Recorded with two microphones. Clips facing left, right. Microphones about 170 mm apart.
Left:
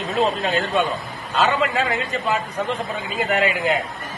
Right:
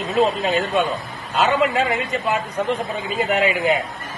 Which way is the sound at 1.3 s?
20° right (ahead or behind).